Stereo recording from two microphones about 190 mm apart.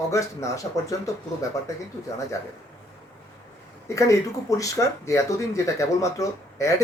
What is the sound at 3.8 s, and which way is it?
Speech, 15° left (ahead or behind).